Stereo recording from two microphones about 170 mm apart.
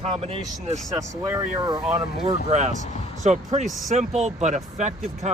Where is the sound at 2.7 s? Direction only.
45° left (ahead or behind).